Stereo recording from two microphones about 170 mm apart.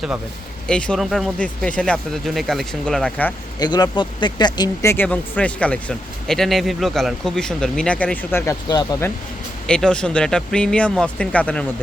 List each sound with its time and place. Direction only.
0.7 s speech: 5° left (ahead or behind)
3.6 s speech: 25° left (ahead or behind)
9.6 s speech: 5° left (ahead or behind)